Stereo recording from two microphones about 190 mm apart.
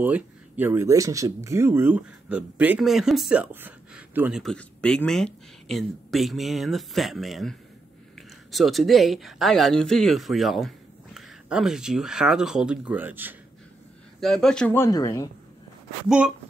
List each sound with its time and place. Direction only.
0.0 s speech: 10° right (ahead or behind)
14.2 s speech: 5° left (ahead or behind)